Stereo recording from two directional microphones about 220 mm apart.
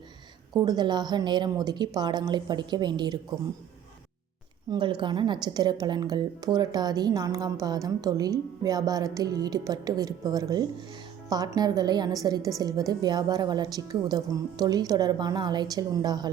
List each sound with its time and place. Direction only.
0.5 s a woman's voice: 20° right (ahead or behind)
4.7 s a woman's voice: 20° right (ahead or behind)